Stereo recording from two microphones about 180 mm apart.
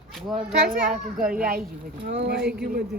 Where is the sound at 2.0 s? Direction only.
70° right (ahead or behind).